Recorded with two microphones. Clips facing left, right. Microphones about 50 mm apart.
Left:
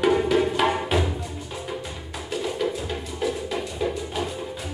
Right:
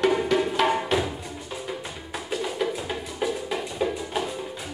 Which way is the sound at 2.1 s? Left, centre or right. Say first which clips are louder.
Even; centre.